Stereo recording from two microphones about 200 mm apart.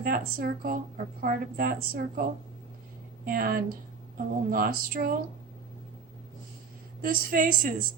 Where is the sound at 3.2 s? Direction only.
50° right (ahead or behind).